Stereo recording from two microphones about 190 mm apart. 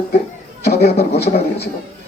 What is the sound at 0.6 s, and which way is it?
Speech, 60° left (ahead or behind).